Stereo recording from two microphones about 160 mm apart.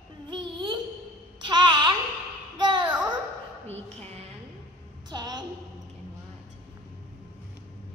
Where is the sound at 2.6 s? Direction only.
30° right (ahead or behind).